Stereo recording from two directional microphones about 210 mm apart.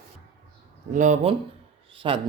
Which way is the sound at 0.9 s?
35° right (ahead or behind).